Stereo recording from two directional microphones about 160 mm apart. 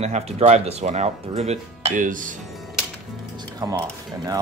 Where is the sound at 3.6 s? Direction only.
25° right (ahead or behind).